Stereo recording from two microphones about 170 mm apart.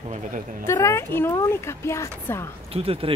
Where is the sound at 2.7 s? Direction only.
35° right (ahead or behind).